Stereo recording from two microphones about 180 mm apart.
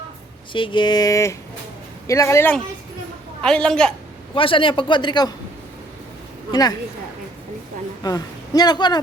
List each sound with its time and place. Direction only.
0.5 s a man's voice: 25° left (ahead or behind); by 3.9 s 5° left (ahead or behind)
4.4 s a man's voice: 30° left (ahead or behind)
6.5 s a man's voice: 20° left (ahead or behind)
8.0 s a man's voice: 20° left (ahead or behind)